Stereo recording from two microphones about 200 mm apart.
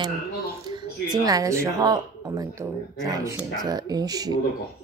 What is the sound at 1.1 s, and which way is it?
A woman's voice, 20° right (ahead or behind).